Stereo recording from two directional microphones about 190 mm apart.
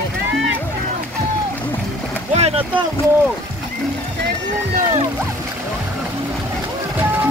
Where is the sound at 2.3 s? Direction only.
30° right (ahead or behind).